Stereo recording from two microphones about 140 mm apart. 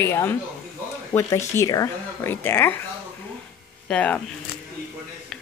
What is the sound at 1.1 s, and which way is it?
Speech, 35° left (ahead or behind).